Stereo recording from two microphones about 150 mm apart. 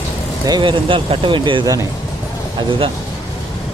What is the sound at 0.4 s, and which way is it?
Speech, 30° right (ahead or behind).